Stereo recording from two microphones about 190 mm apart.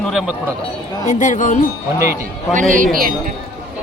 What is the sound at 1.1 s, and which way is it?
Speech, 40° left (ahead or behind).